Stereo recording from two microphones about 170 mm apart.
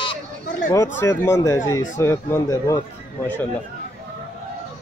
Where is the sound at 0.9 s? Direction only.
15° left (ahead or behind).